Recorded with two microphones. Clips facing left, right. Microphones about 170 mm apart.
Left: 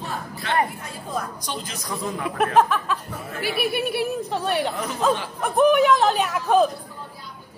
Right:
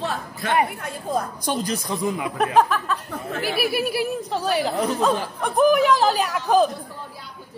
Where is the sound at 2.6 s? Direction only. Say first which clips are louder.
Even; centre (ahead or behind).